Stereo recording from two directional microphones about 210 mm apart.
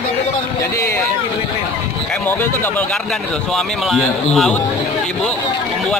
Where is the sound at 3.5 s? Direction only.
Centre (ahead or behind).